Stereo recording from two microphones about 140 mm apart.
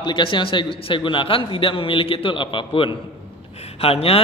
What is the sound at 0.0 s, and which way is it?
A man's voice, 35° left (ahead or behind).